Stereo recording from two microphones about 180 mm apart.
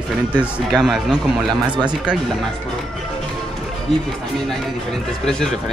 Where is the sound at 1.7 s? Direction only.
25° right (ahead or behind).